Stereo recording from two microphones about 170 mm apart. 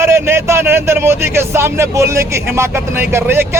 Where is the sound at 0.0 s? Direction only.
15° right (ahead or behind).